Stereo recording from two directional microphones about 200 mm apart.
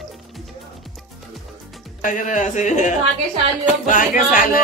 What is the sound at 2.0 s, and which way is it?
Speech, 40° left (ahead or behind).